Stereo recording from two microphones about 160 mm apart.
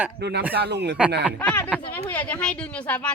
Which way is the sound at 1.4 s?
10° left (ahead or behind).